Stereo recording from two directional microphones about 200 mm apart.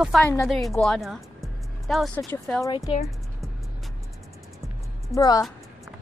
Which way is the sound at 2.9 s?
25° left (ahead or behind).